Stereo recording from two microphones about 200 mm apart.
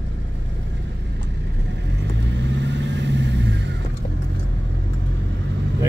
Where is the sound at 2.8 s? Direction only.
60° right (ahead or behind).